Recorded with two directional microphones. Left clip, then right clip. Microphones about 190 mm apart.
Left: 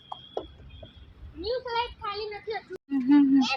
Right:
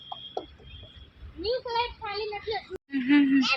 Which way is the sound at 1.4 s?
55° right (ahead or behind).